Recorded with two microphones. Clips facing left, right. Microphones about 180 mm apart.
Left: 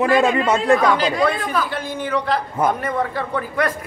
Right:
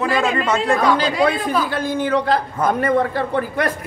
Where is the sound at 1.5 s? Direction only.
35° right (ahead or behind).